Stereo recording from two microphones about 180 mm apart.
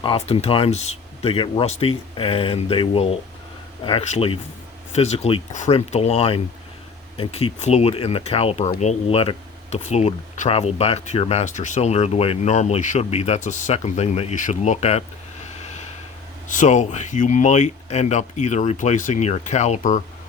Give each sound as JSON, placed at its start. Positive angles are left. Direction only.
{"t": 0.0, "sound": "speech", "side_deg": 30}
{"t": 15.6, "sound": "a sound", "side_deg": 40}
{"t": 16.5, "sound": "speech", "side_deg": 45}